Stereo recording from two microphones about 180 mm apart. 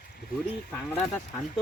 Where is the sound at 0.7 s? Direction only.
10° left (ahead or behind).